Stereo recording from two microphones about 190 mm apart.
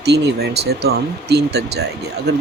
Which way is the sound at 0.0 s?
60° right (ahead or behind).